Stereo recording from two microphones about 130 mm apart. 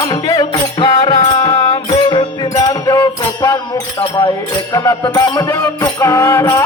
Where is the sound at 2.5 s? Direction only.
30° left (ahead or behind).